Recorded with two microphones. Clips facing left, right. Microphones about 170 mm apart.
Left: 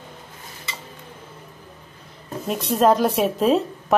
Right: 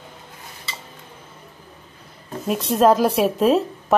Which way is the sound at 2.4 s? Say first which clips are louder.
Right 2 dB; centre (ahead or behind).